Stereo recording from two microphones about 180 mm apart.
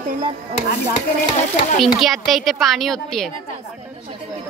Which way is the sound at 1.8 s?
Centre (ahead or behind).